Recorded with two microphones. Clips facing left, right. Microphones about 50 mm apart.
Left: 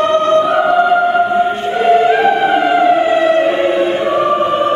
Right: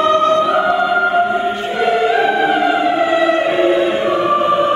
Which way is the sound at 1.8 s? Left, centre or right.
Left.